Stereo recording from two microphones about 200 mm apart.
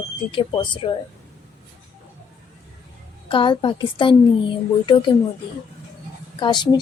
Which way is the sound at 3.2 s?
25° left (ahead or behind).